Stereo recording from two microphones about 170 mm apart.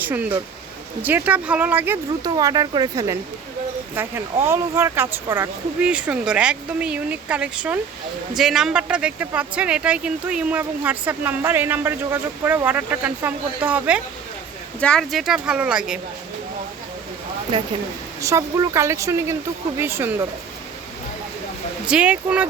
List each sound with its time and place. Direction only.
0.0 s speech: 10° right (ahead or behind)
2.3 s speech: 20° right (ahead or behind)
14.8 s speech: 5° left (ahead or behind)
17.5 s speech: 30° right (ahead or behind)
18.2 s speech: 20° right (ahead or behind)
21.8 s speech: 5° right (ahead or behind)